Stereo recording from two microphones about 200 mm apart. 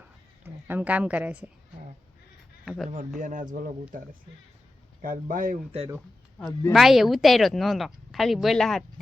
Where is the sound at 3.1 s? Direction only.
40° right (ahead or behind).